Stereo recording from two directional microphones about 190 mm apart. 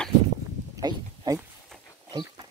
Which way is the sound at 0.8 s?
20° right (ahead or behind).